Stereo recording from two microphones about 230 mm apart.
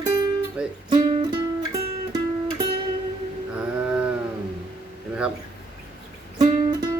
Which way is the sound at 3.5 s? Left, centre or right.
Centre.